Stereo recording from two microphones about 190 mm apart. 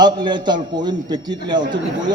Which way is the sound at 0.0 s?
25° right (ahead or behind).